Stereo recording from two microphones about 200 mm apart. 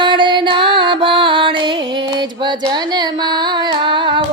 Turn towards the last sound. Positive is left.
turn(degrees=-25)  # may be behind; listen again after turning